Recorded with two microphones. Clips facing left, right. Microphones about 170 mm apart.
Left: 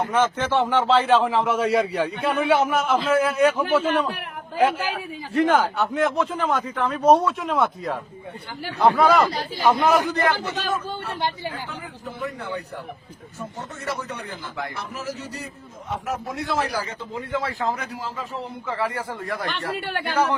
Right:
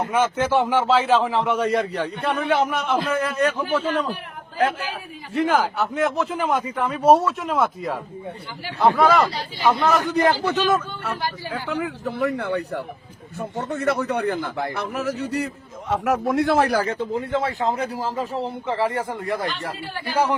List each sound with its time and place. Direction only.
0.1 s a man's voice: 10° right (ahead or behind); by 3.5 s 5° left (ahead or behind)
4.5 s a man's voice: centre (ahead or behind)
9.6 s a man's voice: 10° left (ahead or behind)
10.4 s speech: 65° right (ahead or behind)
11.7 s speech: 75° right (ahead or behind); by 17.0 s 60° right (ahead or behind)
17.2 s a man's voice: 25° right (ahead or behind)
17.9 s a man's voice: 35° right (ahead or behind)
19.7 s speech: 70° left (ahead or behind)